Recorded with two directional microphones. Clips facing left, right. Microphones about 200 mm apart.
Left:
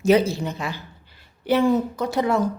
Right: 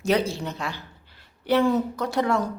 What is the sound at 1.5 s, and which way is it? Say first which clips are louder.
Speech: left 2 dB; 15° left (ahead or behind).